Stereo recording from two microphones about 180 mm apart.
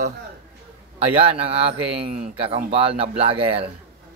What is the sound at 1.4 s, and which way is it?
Speech, 35° right (ahead or behind).